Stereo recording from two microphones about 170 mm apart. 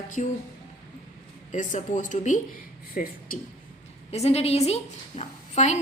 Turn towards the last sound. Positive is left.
turn(degrees=40)  # may be behind; listen again after turning